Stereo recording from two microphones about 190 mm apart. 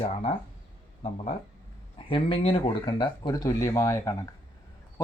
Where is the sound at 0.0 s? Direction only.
35° left (ahead or behind).